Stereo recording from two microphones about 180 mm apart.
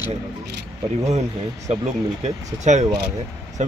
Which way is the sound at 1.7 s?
40° right (ahead or behind).